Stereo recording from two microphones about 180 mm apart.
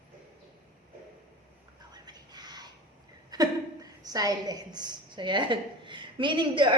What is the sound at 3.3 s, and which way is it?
A woman's voice, 20° right (ahead or behind).